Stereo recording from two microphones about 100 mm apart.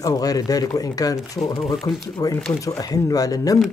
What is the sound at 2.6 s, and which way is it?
Speech, 35° left (ahead or behind).